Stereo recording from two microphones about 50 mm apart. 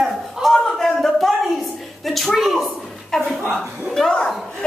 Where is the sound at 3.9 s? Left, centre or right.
Centre.